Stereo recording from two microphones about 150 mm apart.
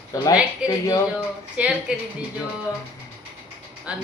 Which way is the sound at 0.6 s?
5° right (ahead or behind).